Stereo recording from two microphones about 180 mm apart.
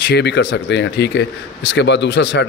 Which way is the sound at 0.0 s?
70° left (ahead or behind).